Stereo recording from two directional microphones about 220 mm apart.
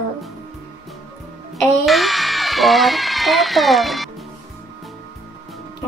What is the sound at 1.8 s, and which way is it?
Speech, centre (ahead or behind).